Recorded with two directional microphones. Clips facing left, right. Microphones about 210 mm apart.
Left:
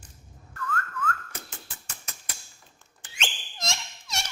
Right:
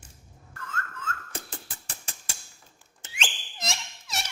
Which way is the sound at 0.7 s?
25° right (ahead or behind).